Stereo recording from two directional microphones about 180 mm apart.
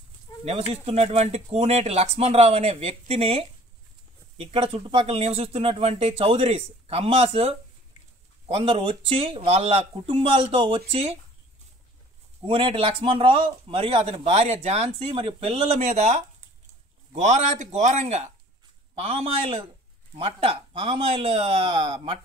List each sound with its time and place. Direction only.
0.5 s speech: 35° right (ahead or behind)
12.4 s speech: 30° right (ahead or behind)